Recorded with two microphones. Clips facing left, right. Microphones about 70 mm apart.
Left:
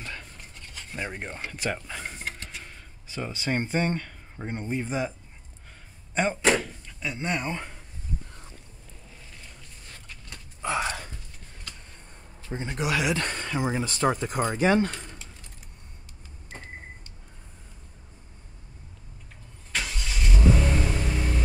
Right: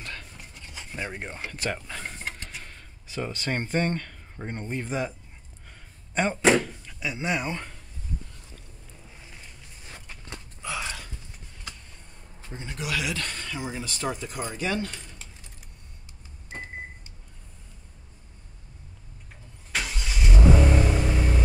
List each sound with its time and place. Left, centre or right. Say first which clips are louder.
0.0 s a sound: even; centre
0.9 s speech: even; centre
1.8 s mechanisms: even; centre
6.1 s speech: right 2 dB; centre
7.5 s speech: left 1 dB; centre
10.0 s horse: right 4 dB; right
10.6 s a sound: left 6 dB; left
12.4 s speech: left 5 dB; left
19.7 s vehicle: right 1 dB; centre